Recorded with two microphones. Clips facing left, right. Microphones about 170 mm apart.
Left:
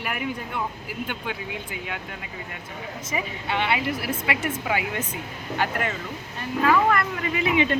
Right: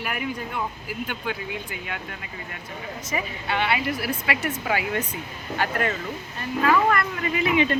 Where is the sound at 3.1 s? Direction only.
20° left (ahead or behind).